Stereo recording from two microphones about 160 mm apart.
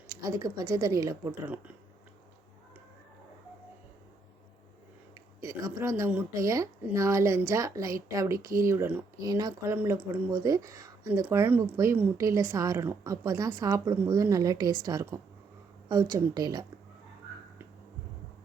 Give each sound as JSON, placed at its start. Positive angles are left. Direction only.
{"t": 0.1, "sound": "speech", "side_deg": -20}
{"t": 5.4, "sound": "speech", "side_deg": -20}